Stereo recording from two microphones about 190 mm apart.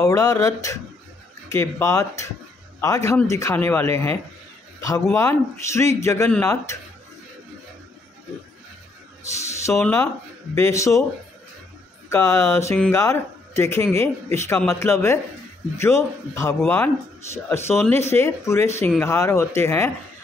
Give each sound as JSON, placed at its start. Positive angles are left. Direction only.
{"t": 0.0, "sound": "speech", "side_deg": 20}
{"t": 9.8, "sound": "speech", "side_deg": 5}
{"t": 10.5, "sound": "speech", "side_deg": 15}
{"t": 12.1, "sound": "a man's voice", "side_deg": 15}